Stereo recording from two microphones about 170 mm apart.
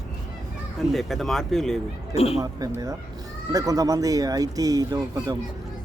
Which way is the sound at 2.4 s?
20° right (ahead or behind).